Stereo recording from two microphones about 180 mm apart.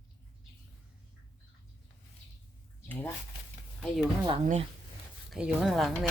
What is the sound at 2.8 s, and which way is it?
Speech, 10° left (ahead or behind).